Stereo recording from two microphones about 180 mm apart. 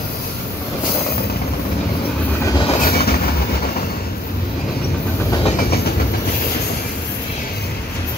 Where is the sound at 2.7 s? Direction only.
60° left (ahead or behind).